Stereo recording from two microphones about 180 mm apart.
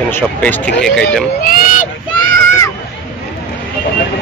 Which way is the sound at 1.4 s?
50° left (ahead or behind).